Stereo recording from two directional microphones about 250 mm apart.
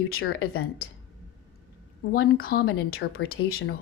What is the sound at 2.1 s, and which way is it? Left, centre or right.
A woman's voice, left.